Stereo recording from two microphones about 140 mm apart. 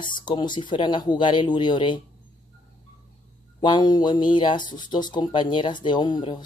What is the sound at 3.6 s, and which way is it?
Speech, 30° left (ahead or behind).